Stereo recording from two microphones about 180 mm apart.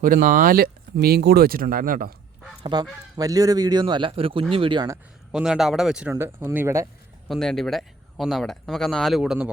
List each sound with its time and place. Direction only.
0.0 s speech: 50° right (ahead or behind)
2.6 s speech: 20° right (ahead or behind)
5.3 s speech: 5° right (ahead or behind)
7.3 s speech: centre (ahead or behind)